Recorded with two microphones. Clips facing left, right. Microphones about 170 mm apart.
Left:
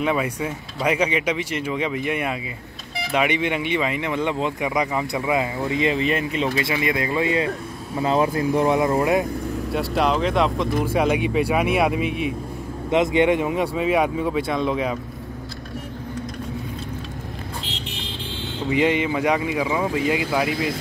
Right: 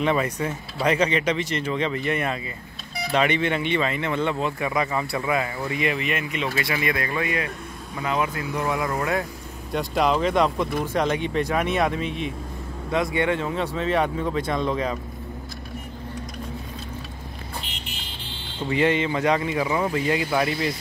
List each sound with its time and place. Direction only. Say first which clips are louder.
0.0 s speech: even; 10° left (ahead or behind)
9.7 s speech: even; 5° left (ahead or behind)
12.9 s speech: left 5 dB; 20° left (ahead or behind); by 15.0 s 5° left (ahead or behind)
18.7 s speech: left 1 dB; 15° left (ahead or behind)